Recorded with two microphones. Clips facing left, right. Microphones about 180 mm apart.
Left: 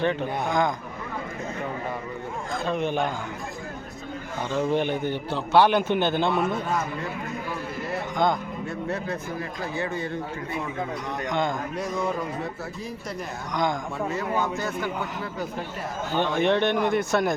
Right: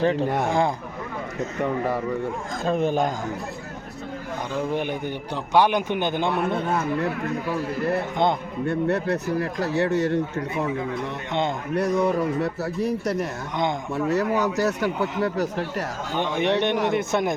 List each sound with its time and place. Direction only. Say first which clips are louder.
0.0 s a man's voice: right 3 dB; 35° right (ahead or behind)
0.3 s speech: right 4 dB; 90° right
2.6 s a man's voice: right 4 dB; 40° right (ahead or behind)
4.5 s a man's voice: left 2 dB; 10° right (ahead or behind)
6.6 s speech: right 4 dB; 65° right (ahead or behind)
8.6 s speech: right 10 dB; 65° right (ahead or behind)
11.3 s speech: right 1 dB; 25° right (ahead or behind)
11.7 s speech: right 6 dB; 65° right (ahead or behind)
16.1 s speech: even; 15° right (ahead or behind)